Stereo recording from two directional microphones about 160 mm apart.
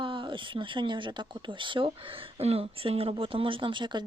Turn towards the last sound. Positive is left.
turn(degrees=-30)  # may be behind; listen again after turning